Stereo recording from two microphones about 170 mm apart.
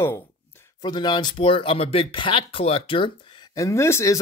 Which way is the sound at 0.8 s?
25° left (ahead or behind).